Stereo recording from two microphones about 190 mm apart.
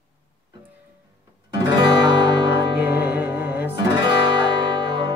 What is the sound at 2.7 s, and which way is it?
Music, 10° right (ahead or behind).